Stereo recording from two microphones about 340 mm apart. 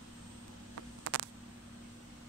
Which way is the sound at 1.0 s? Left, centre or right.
Right.